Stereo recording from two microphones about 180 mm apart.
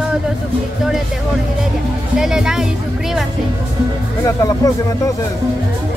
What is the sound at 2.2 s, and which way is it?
Speech, 5° right (ahead or behind).